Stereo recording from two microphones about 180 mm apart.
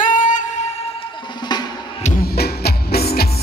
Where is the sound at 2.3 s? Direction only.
60° left (ahead or behind).